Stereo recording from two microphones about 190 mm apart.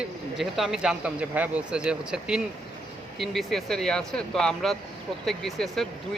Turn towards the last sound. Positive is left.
turn(degrees=0)  # may be behind; listen again after turning